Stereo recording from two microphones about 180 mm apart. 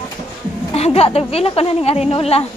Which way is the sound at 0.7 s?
35° left (ahead or behind).